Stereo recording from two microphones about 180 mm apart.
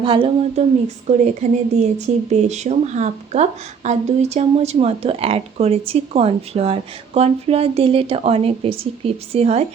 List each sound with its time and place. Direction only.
0.0 s a woman's voice: 30° right (ahead or behind)
1.0 s speech: 40° right (ahead or behind)